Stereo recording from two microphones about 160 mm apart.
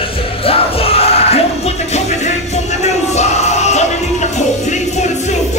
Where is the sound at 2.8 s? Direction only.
45° left (ahead or behind).